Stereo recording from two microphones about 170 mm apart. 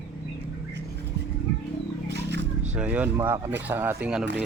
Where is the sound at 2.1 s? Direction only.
90° right.